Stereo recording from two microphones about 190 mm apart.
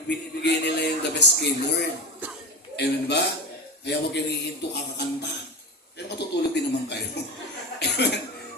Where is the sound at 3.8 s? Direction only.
60° left (ahead or behind).